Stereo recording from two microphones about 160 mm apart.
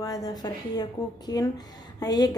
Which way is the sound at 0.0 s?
20° left (ahead or behind).